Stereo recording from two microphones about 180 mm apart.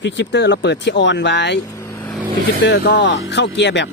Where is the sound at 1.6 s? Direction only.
15° left (ahead or behind).